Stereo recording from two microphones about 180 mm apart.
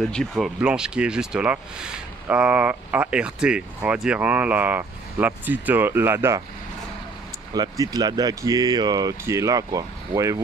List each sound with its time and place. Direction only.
0.1 s speech: centre (ahead or behind); by 6.4 s 15° right (ahead or behind)
7.5 s speech: 20° right (ahead or behind)